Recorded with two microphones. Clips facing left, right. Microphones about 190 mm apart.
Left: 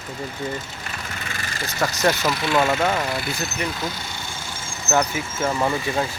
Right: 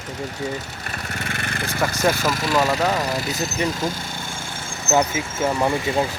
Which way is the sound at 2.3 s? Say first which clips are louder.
Even; 40° right (ahead or behind).